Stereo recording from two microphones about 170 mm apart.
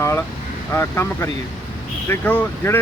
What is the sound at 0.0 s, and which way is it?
Speech, 15° left (ahead or behind).